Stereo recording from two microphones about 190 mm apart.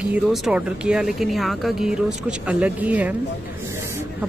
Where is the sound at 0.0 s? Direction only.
5° right (ahead or behind).